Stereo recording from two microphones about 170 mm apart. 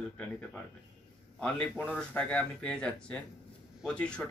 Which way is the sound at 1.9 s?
5° left (ahead or behind).